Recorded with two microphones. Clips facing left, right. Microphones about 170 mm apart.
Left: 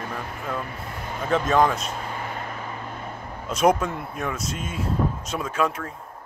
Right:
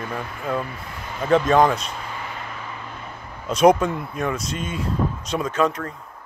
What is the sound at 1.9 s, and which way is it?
Vehicle, 45° left (ahead or behind).